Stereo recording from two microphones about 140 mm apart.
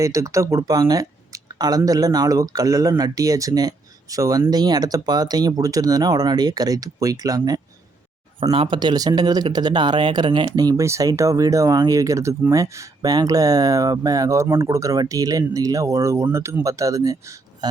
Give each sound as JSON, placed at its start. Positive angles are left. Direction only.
{"t": 0.0, "sound": "speech", "side_deg": -20}